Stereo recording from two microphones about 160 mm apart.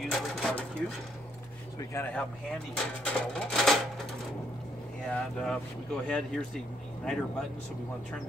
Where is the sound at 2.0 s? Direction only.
20° left (ahead or behind).